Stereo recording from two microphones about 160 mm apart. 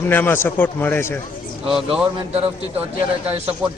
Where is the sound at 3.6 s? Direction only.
5° right (ahead or behind).